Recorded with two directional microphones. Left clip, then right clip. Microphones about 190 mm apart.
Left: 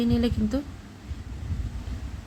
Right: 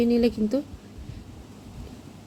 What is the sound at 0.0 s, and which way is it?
Speech, 15° right (ahead or behind).